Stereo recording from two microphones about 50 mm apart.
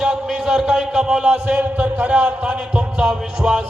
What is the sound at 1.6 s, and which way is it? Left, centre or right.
Speech, right.